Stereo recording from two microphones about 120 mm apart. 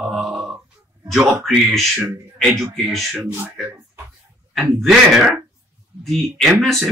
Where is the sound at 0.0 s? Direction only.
5° right (ahead or behind).